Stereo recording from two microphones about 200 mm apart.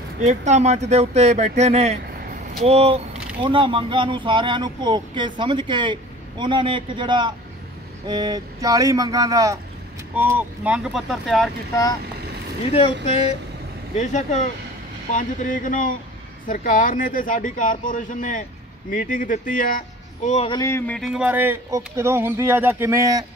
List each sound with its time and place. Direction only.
0.5 s speech: 35° right (ahead or behind); by 11.5 s centre (ahead or behind)
13.0 s speech: 30° left (ahead or behind)
20.2 s speech: 30° left (ahead or behind)
20.6 s speech: 10° left (ahead or behind); by 23.2 s 15° right (ahead or behind)